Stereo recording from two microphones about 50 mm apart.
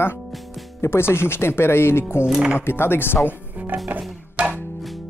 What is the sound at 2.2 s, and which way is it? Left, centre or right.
Speech, centre.